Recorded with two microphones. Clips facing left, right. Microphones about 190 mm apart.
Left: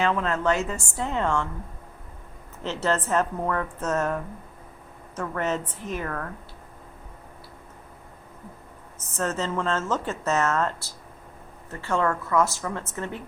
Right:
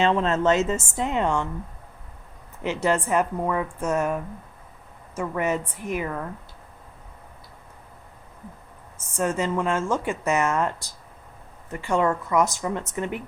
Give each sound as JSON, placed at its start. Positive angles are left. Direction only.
{"t": 0.0, "sound": "a woman's voice", "side_deg": -25}
{"t": 2.6, "sound": "speech", "side_deg": -15}
{"t": 9.0, "sound": "speech", "side_deg": -10}